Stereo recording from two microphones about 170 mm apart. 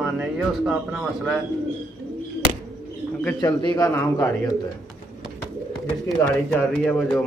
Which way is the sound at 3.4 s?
20° left (ahead or behind).